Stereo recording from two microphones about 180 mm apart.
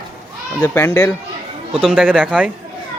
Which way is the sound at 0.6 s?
10° left (ahead or behind).